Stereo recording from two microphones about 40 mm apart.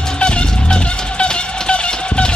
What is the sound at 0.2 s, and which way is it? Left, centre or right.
Music, left.